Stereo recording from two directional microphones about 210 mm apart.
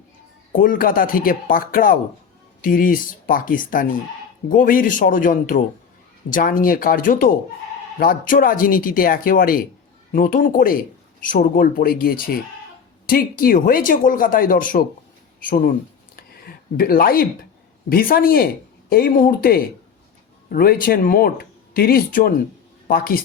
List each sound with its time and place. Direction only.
0.5 s speech: 40° left (ahead or behind)
16.7 s speech: 45° left (ahead or behind)